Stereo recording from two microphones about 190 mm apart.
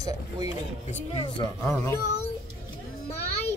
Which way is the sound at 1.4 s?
20° left (ahead or behind).